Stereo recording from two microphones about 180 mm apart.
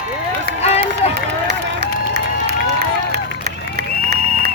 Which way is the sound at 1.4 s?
70° right (ahead or behind).